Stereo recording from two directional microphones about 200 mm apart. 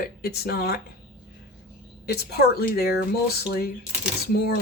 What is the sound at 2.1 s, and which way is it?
Speech, 55° left (ahead or behind).